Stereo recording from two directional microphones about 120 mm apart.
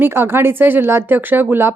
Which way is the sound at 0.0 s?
20° right (ahead or behind).